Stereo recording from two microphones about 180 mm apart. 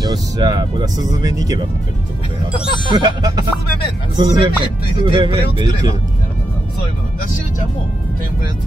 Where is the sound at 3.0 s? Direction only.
20° right (ahead or behind).